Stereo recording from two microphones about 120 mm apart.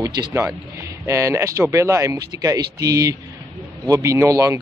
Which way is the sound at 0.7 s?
25° right (ahead or behind).